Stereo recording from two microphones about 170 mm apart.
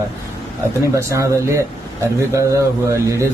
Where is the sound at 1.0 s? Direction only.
15° right (ahead or behind).